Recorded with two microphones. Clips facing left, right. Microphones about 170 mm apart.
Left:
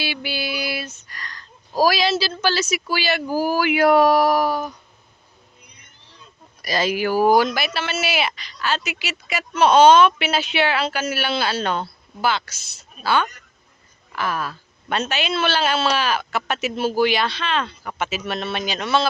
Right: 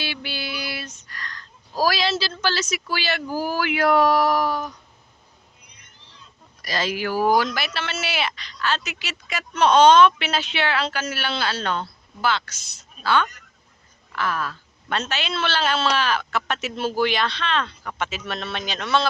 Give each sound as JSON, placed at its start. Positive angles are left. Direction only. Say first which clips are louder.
{"t": 0.0, "sound": "speech", "louder": "left 4 dB", "side_deg": 10}
{"t": 6.6, "sound": "speech", "louder": "left 4 dB", "side_deg": 10}